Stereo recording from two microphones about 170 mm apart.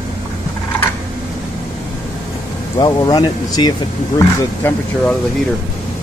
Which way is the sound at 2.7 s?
25° left (ahead or behind).